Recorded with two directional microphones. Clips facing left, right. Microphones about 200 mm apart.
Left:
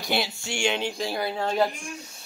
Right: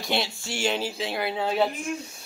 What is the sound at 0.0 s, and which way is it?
Speech, centre (ahead or behind).